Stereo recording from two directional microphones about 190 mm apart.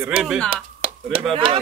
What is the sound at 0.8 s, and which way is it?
Speech, 30° right (ahead or behind).